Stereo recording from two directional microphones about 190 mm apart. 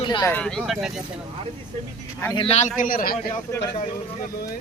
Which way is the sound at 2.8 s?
50° left (ahead or behind).